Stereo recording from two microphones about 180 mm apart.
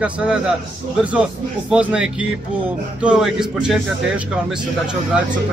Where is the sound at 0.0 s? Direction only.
5° right (ahead or behind).